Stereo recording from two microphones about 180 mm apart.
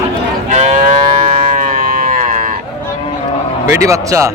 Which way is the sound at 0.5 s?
40° right (ahead or behind).